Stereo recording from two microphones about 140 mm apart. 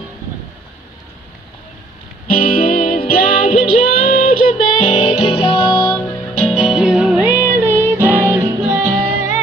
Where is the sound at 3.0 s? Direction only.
45° left (ahead or behind).